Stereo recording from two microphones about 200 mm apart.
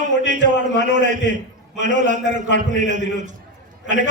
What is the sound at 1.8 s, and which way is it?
A man's voice, 40° right (ahead or behind).